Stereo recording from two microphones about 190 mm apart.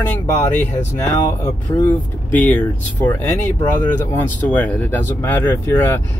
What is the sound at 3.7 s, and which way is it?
Speech, 20° left (ahead or behind).